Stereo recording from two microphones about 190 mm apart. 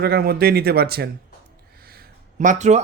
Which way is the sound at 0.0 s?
55° right (ahead or behind).